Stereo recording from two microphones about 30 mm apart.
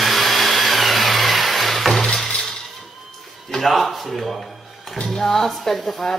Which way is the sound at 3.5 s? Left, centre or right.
Centre.